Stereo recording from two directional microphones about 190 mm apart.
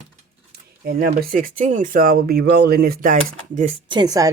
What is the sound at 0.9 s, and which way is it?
Speech, 50° right (ahead or behind).